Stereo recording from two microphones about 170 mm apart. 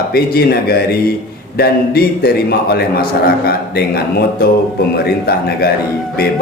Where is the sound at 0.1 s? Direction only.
65° left (ahead or behind).